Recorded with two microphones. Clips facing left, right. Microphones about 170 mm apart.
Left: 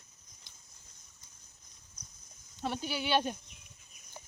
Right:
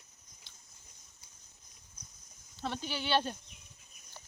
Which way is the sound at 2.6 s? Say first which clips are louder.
Left 2 dB; 10° left (ahead or behind).